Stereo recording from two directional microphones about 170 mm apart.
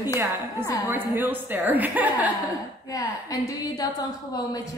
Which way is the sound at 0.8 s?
10° right (ahead or behind).